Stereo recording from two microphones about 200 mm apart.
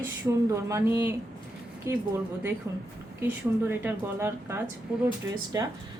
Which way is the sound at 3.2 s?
10° right (ahead or behind).